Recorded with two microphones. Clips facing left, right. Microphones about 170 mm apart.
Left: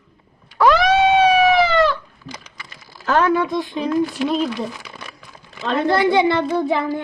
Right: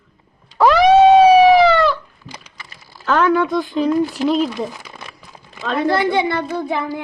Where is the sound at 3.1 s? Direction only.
40° left (ahead or behind).